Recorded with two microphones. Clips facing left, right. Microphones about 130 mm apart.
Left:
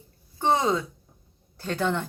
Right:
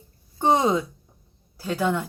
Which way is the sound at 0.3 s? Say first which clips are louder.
Right 3 dB; 20° right (ahead or behind).